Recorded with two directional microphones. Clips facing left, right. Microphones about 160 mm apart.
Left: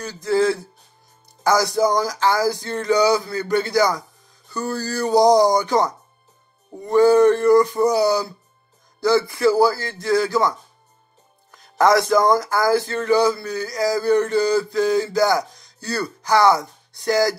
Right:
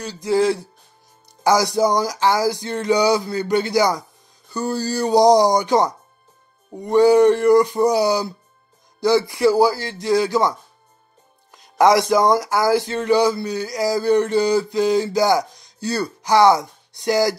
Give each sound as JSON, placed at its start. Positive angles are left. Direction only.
{"t": 0.0, "sound": "music", "side_deg": -15}
{"t": 11.5, "sound": "music", "side_deg": -15}
{"t": 15.8, "sound": "speech", "side_deg": -20}